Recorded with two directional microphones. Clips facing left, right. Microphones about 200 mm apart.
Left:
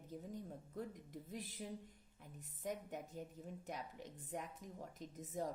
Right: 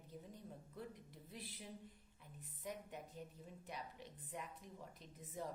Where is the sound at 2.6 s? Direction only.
45° left (ahead or behind).